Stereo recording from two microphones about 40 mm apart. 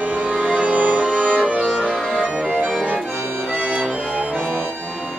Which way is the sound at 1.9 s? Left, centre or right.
Centre.